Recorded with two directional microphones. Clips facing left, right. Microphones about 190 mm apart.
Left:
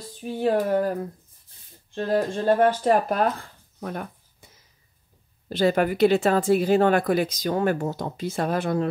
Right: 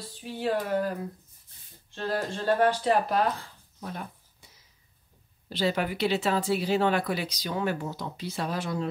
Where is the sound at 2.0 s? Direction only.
50° left (ahead or behind).